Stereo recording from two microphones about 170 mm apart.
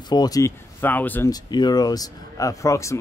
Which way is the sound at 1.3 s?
25° left (ahead or behind).